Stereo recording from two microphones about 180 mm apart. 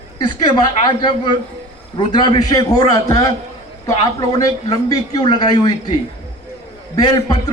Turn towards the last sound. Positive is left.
turn(degrees=20)  # may be behind; listen again after turning